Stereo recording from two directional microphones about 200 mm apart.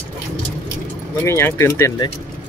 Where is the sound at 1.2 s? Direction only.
10° left (ahead or behind).